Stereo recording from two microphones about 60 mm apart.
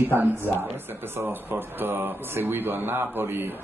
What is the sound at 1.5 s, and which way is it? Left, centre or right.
A man's voice, right.